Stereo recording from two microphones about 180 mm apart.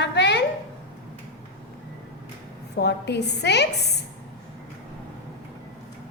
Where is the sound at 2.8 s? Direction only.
70° left (ahead or behind).